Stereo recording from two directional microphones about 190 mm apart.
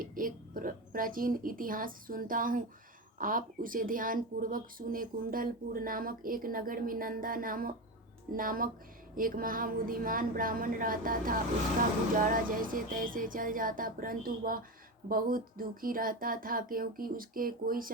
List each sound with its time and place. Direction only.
0.0 s speech: 45° right (ahead or behind)